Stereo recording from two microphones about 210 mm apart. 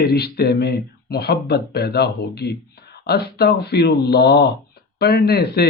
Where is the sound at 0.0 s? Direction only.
50° left (ahead or behind).